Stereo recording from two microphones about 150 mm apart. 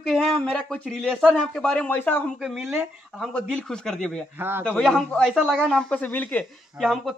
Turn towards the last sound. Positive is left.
turn(degrees=0)  # may be behind; listen again after turning